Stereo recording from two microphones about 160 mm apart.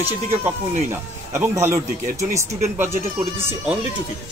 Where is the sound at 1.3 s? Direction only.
15° right (ahead or behind).